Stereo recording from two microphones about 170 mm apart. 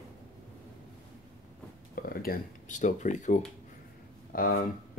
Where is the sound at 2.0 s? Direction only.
60° left (ahead or behind).